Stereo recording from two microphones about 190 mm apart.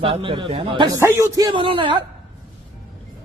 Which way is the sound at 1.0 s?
15° right (ahead or behind).